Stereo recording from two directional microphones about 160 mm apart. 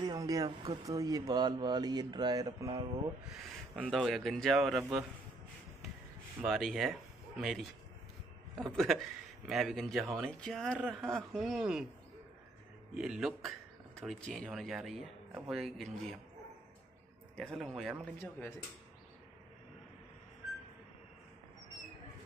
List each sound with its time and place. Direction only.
0.0 s speech: 25° right (ahead or behind)
3.7 s speech: centre (ahead or behind)
6.4 s speech: centre (ahead or behind)
12.9 s speech: 5° right (ahead or behind)
17.4 s speech: 5° left (ahead or behind)